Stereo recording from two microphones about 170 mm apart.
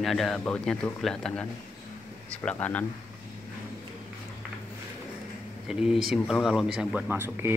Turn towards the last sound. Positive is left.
turn(degrees=-10)  # may be behind; listen again after turning